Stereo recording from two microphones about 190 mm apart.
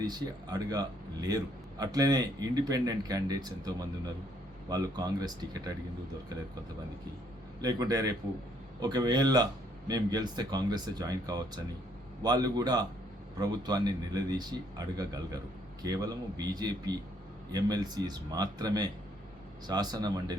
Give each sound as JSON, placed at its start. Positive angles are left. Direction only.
{"t": 0.0, "sound": "speech", "side_deg": -20}
{"t": 7.6, "sound": "speech", "side_deg": -20}